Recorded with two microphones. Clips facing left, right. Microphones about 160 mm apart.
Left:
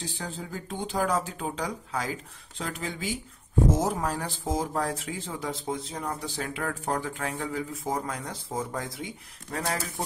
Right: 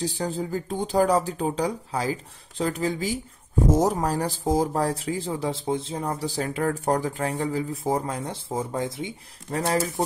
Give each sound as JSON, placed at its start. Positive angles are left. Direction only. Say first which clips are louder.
{"t": 0.0, "sound": "speech", "louder": "right 9 dB", "side_deg": -35}